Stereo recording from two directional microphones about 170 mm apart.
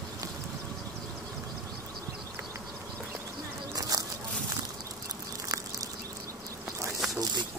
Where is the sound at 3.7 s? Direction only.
20° right (ahead or behind).